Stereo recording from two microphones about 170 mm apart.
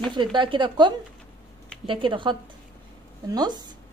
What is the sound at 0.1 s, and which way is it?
Speech, 30° right (ahead or behind).